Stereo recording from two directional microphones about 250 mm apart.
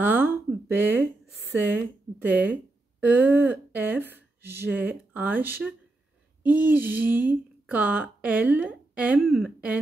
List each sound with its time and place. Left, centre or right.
0.0 s a woman's voice: centre